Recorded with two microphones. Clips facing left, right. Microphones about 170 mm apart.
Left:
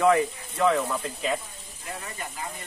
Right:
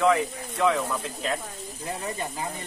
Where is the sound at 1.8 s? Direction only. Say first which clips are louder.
Right 5 dB; 30° right (ahead or behind).